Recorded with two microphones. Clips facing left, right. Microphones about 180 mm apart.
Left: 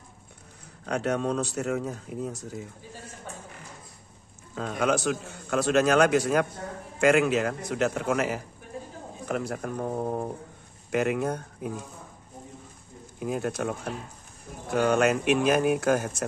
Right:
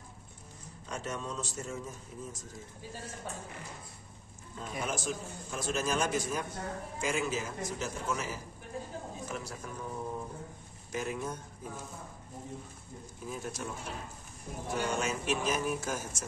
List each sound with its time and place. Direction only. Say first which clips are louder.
0.8 s a man's voice: left 12 dB; 65° left (ahead or behind)
4.6 s a man's voice: left 11 dB; 75° left (ahead or behind); by 10.3 s 55° left (ahead or behind)
10.9 s a man's voice: left 10 dB; 70° left (ahead or behind)
13.2 s a man's voice: left 11 dB; 70° left (ahead or behind)